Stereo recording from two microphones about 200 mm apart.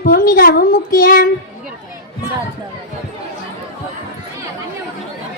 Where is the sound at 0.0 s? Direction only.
50° left (ahead or behind).